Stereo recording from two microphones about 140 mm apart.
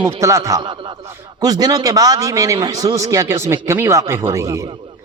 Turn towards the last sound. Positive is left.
turn(degrees=-20)  # may be behind; listen again after turning